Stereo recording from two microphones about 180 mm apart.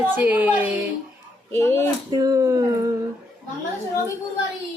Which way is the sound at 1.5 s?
15° left (ahead or behind).